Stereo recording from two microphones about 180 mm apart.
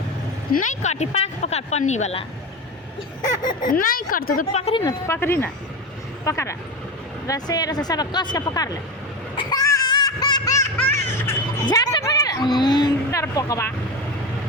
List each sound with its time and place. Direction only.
0.5 s speech: 45° left (ahead or behind)
3.6 s a woman's voice: 50° left (ahead or behind)
4.5 s speech: 35° left (ahead or behind)
4.8 s speech: 15° left (ahead or behind)
9.3 s laughter: 25° left (ahead or behind)
10.8 s speech: 10° left (ahead or behind)
11.6 s a woman's voice: 20° left (ahead or behind)